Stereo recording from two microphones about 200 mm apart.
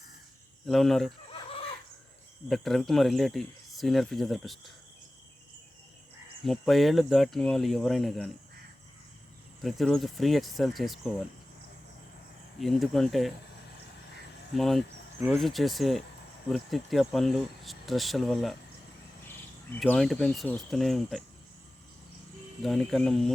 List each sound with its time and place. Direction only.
0.7 s speech: centre (ahead or behind)
1.3 s chicken: 30° left (ahead or behind)
2.5 s speech: centre (ahead or behind)
6.4 s speech: centre (ahead or behind)
9.6 s speech: centre (ahead or behind)
12.5 s speech: centre (ahead or behind)
14.5 s speech: centre (ahead or behind)
19.7 s speech: 5° left (ahead or behind)
22.6 s speech: centre (ahead or behind)